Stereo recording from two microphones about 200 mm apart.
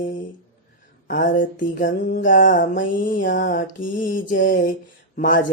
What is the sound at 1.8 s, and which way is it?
Mantra, 40° left (ahead or behind).